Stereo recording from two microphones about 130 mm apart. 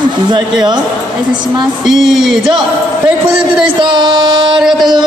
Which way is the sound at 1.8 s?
Centre (ahead or behind).